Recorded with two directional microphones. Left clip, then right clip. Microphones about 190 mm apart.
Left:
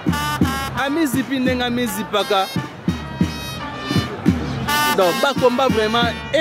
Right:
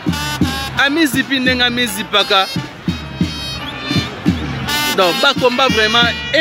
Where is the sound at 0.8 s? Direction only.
5° left (ahead or behind).